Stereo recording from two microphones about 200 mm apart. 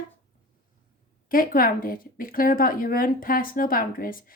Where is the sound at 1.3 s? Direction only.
45° left (ahead or behind).